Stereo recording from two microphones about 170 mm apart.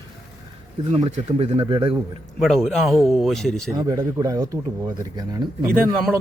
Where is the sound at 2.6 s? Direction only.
Centre (ahead or behind).